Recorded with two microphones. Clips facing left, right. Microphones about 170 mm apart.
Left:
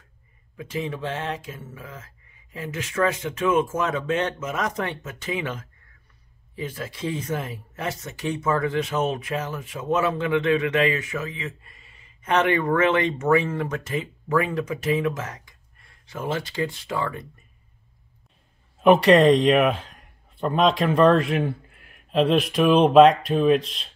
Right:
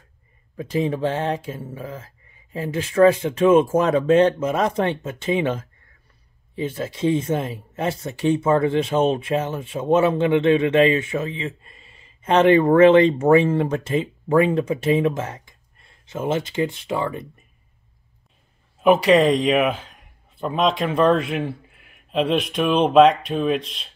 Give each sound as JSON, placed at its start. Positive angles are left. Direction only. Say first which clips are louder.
{"t": 0.6, "sound": "speech", "louder": "right 7 dB", "side_deg": -35}
{"t": 18.8, "sound": "speech", "louder": "even", "side_deg": 0}